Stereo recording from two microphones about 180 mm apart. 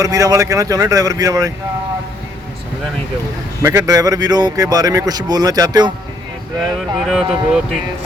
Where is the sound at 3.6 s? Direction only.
20° right (ahead or behind).